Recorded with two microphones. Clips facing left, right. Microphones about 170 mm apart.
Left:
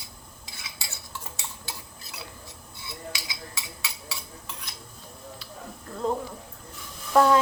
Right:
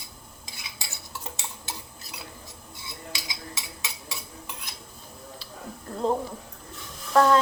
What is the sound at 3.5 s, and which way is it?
Cutlery, 20° right (ahead or behind).